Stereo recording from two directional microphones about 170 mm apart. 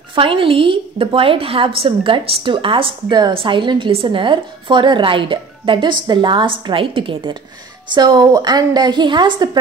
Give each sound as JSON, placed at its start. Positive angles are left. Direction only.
{"t": 0.1, "sound": "a woman's voice", "side_deg": -30}